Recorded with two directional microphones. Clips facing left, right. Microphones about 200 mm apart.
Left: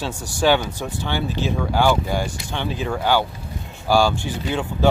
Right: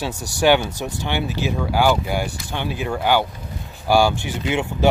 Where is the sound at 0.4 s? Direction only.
15° right (ahead or behind).